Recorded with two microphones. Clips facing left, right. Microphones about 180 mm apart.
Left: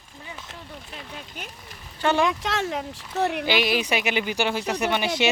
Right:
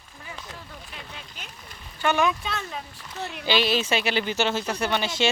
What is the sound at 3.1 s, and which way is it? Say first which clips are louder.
Speech: left 10 dB; 60° left (ahead or behind).